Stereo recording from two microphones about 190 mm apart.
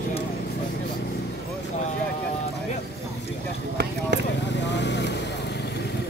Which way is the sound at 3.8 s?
60° right (ahead or behind).